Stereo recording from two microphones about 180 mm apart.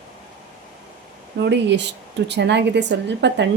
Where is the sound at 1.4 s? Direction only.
75° right (ahead or behind).